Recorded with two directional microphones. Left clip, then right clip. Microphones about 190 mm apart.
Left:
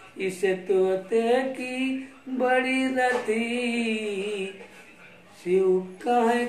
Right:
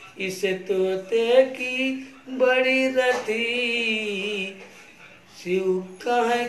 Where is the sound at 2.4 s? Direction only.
20° left (ahead or behind).